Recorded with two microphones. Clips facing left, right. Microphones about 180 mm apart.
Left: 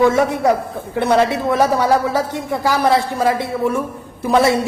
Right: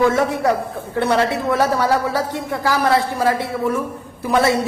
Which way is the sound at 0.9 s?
20° left (ahead or behind).